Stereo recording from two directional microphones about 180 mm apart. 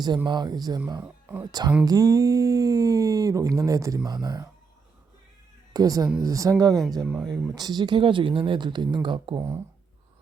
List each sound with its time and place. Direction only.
0.3 s speech: 25° right (ahead or behind)
1.0 s speech: 10° right (ahead or behind)
1.5 s speech: 20° right (ahead or behind)
5.7 s speech: 20° right (ahead or behind)
7.0 s speech: centre (ahead or behind)
7.5 s speech: 20° right (ahead or behind)
9.4 s speech: 15° right (ahead or behind)